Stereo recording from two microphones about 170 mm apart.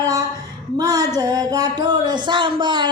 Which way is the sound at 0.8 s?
20° right (ahead or behind).